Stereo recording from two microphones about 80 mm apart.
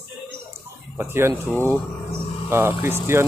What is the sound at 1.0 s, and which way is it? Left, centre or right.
Speech, right.